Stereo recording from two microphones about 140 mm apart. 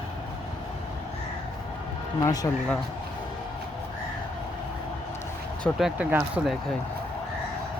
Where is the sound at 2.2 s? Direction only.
25° left (ahead or behind).